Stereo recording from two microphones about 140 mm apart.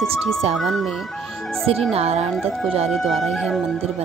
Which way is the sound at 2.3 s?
Centre (ahead or behind).